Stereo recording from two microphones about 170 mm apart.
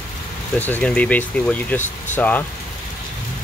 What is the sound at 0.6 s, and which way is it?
Speech, 10° left (ahead or behind).